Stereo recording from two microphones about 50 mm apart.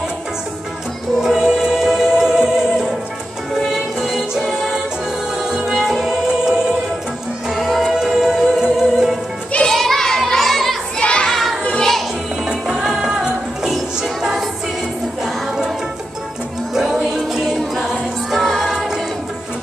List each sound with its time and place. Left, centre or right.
1.2 s music: centre
7.5 s music: centre
9.6 s children playing: centre
11.0 s a sound: centre
11.2 s children playing: centre
12.4 s music: centre
16.7 s music: centre